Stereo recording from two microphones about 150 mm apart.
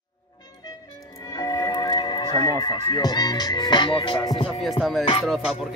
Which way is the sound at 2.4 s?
25° left (ahead or behind).